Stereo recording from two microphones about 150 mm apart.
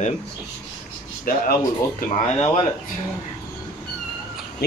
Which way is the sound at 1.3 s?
70° left (ahead or behind).